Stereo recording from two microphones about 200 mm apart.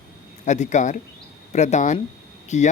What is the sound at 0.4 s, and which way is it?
Speech, 35° left (ahead or behind).